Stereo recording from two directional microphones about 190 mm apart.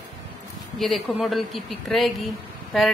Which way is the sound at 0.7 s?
Centre (ahead or behind).